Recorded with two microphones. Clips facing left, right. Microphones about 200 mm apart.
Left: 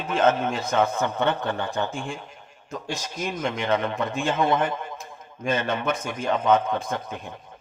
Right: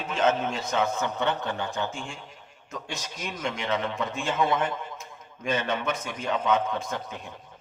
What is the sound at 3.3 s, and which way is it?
A man's voice, 50° left (ahead or behind).